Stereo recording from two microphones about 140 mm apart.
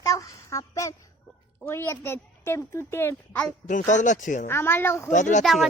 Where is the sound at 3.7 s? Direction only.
65° left (ahead or behind).